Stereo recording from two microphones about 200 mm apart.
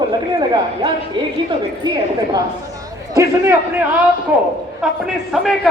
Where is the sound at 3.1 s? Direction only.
15° right (ahead or behind).